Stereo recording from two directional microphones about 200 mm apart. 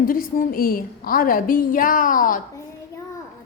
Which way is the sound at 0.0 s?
45° left (ahead or behind).